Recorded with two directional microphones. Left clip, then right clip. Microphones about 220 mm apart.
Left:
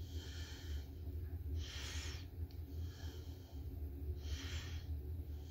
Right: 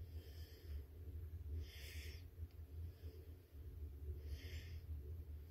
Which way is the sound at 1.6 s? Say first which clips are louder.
Left 9 dB; 5° right (ahead or behind).